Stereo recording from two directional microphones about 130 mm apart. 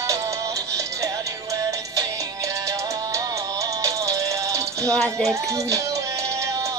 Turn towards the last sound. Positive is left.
turn(degrees=-25)  # may be behind; listen again after turning